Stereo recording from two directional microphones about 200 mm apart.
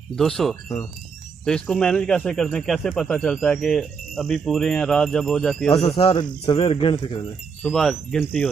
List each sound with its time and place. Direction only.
0.1 s speech: 5° left (ahead or behind)
5.9 s speech: 25° left (ahead or behind)
7.6 s speech: centre (ahead or behind)